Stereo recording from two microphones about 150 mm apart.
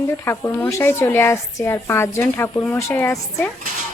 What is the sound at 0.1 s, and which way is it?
A woman's voice, 15° left (ahead or behind).